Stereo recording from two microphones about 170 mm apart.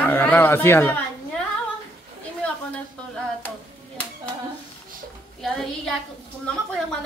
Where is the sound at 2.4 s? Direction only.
10° left (ahead or behind).